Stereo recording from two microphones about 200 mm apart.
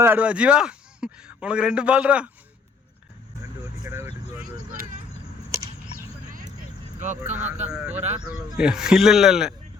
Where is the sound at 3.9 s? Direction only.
15° right (ahead or behind).